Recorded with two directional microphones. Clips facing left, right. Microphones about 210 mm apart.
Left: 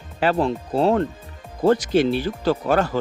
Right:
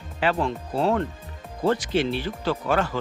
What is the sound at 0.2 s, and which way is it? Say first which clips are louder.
Speech: left 4 dB; 40° left (ahead or behind).